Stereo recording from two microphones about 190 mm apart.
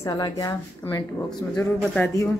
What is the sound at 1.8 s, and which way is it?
Speech, 5° left (ahead or behind).